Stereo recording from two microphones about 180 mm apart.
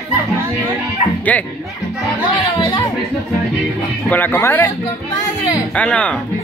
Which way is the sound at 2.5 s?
25° left (ahead or behind).